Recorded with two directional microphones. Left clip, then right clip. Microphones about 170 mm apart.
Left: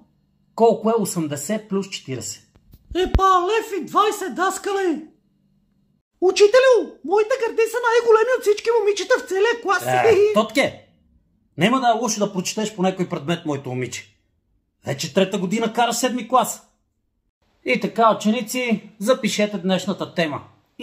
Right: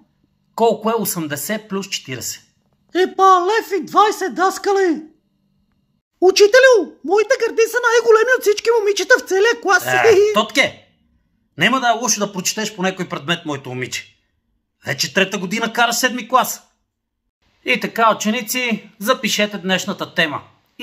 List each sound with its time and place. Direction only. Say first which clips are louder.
0.6 s speech: right 1 dB; 5° left (ahead or behind)
2.9 s a man's voice: right 5 dB; 5° right (ahead or behind)
6.1 s speech: right 3 dB; 20° right (ahead or behind)
10.3 s speech: right 3 dB; 10° left (ahead or behind)
17.6 s speech: right 2 dB; 5° left (ahead or behind)